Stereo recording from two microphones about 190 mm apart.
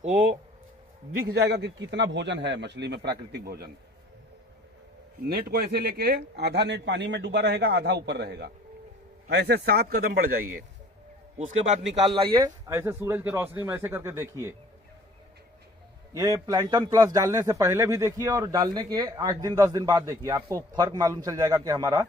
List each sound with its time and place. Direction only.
1.2 s a man's voice: 55° right (ahead or behind)
5.3 s a man's voice: 50° right (ahead or behind)
11.3 s a man's voice: 35° right (ahead or behind); by 14.5 s 15° right (ahead or behind)
16.2 s a man's voice: 15° right (ahead or behind)